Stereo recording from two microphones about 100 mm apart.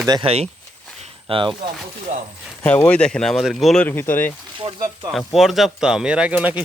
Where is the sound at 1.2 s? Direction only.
60° right (ahead or behind).